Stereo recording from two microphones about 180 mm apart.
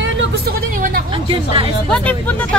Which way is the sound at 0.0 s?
90° right.